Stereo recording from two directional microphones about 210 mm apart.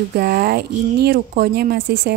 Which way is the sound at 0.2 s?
50° right (ahead or behind).